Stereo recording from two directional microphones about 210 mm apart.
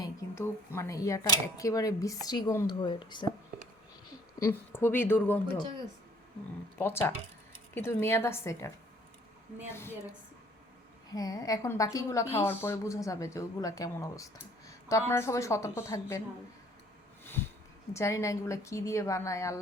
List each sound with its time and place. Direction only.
0.0 s speech: 15° left (ahead or behind)
4.4 s a woman's voice: 10° left (ahead or behind)
6.7 s a woman's voice: 10° left (ahead or behind)
11.1 s a woman's voice: 15° left (ahead or behind)
17.9 s a woman's voice: 15° left (ahead or behind)